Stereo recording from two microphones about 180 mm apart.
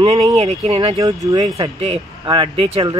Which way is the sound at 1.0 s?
20° right (ahead or behind).